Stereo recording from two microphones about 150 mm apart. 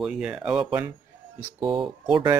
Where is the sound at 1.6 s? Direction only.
35° right (ahead or behind).